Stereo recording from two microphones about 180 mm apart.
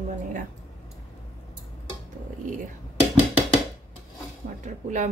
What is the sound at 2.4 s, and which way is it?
Whispering, 45° right (ahead or behind).